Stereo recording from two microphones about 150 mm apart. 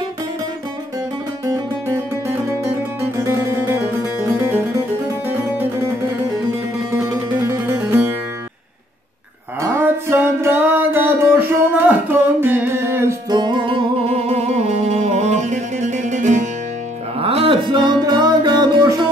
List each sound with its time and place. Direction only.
1.4 s music: 20° right (ahead or behind)
6.9 s music: 20° right (ahead or behind)
9.6 s music: 15° right (ahead or behind)
13.3 s music: 30° right (ahead or behind)
14.3 s music: 45° right (ahead or behind)
17.2 s music: 40° right (ahead or behind)